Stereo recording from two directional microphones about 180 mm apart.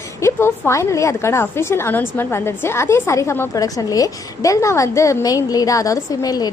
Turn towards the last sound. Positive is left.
turn(degrees=20)  # may be behind; listen again after turning